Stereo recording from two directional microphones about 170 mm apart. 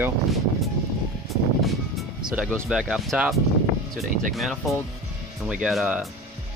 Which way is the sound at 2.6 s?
5° right (ahead or behind).